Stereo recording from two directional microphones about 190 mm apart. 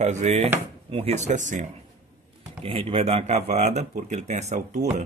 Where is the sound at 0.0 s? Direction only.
35° right (ahead or behind).